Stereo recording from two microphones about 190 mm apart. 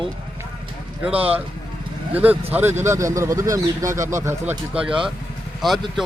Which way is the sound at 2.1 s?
10° right (ahead or behind).